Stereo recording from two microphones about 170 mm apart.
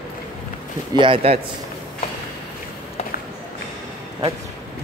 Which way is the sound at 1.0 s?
35° right (ahead or behind).